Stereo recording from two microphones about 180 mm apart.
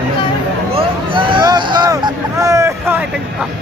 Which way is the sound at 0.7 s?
30° right (ahead or behind).